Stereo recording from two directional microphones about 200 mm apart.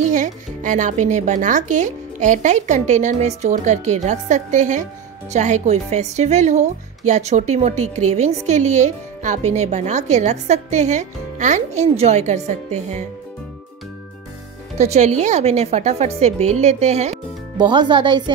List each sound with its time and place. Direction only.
0.0 s speech: 40° right (ahead or behind)
14.8 s speech: 35° right (ahead or behind)
17.6 s speech: 25° right (ahead or behind)